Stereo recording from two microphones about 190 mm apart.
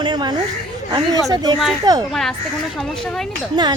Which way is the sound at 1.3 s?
20° right (ahead or behind).